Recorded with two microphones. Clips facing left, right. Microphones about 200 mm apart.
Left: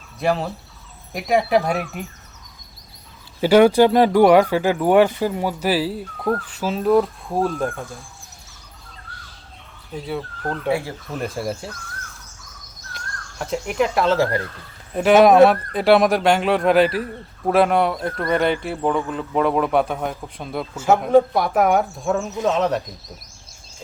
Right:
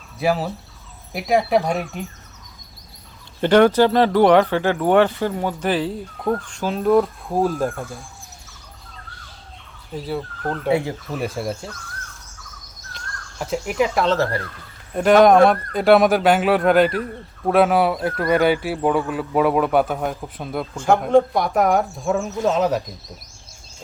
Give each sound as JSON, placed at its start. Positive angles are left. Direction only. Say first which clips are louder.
{"t": 0.2, "sound": "speech", "louder": "even", "side_deg": -5}
{"t": 3.4, "sound": "speech", "louder": "left 1 dB", "side_deg": 10}
{"t": 9.9, "sound": "speech", "louder": "right 1 dB", "side_deg": 0}
{"t": 10.7, "sound": "speech", "louder": "right 3 dB", "side_deg": -20}
{"t": 11.1, "sound": "speech", "louder": "left 1 dB", "side_deg": 0}
{"t": 13.4, "sound": "speech", "louder": "even", "side_deg": 0}